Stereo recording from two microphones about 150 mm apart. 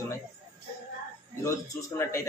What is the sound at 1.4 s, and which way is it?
Speech, 20° left (ahead or behind).